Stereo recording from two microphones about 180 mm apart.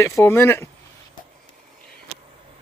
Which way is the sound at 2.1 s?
35° right (ahead or behind).